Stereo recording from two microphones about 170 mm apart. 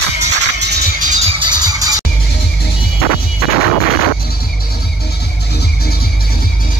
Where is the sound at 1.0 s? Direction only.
45° right (ahead or behind).